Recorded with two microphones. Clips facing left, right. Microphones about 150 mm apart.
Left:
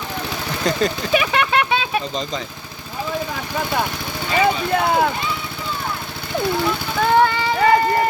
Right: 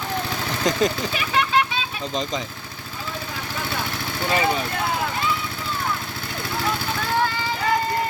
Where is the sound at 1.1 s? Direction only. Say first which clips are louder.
Left 4 dB; 70° left (ahead or behind).